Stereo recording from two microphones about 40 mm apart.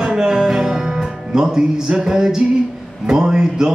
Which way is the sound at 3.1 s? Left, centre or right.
Centre.